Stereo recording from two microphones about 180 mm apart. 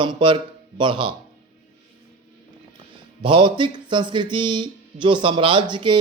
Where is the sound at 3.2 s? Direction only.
30° right (ahead or behind).